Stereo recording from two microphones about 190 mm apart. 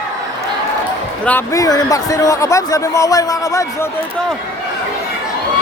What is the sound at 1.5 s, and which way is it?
Speech, 20° left (ahead or behind).